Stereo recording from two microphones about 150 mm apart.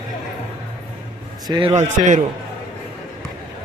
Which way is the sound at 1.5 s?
25° right (ahead or behind).